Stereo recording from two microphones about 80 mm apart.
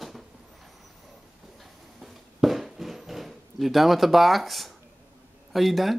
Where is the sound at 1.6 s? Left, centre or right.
Centre.